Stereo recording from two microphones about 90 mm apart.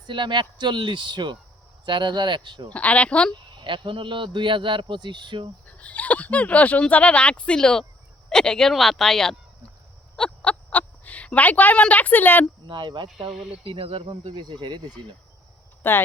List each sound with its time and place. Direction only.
0.1 s a man's voice: 60° right (ahead or behind)
2.7 s speech: 15° left (ahead or behind)
3.6 s a man's voice: 65° right (ahead or behind)
5.6 s speech: 15° left (ahead or behind)
10.2 s a sound: 15° left (ahead or behind)
12.6 s a man's voice: 60° right (ahead or behind)
13.7 s speech: 90° right; by 14.8 s 55° right (ahead or behind)
15.8 s speech: 25° left (ahead or behind)